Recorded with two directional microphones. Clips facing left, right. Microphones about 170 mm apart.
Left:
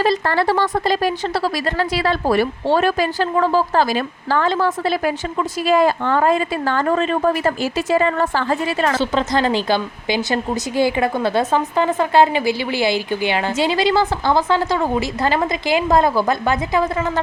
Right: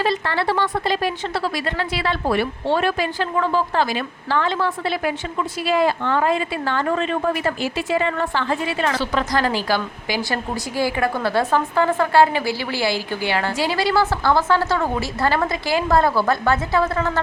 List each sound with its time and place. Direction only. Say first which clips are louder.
0.0 s speech: left 4 dB; 40° left (ahead or behind)
9.0 s a woman's voice: left 3 dB; 25° left (ahead or behind)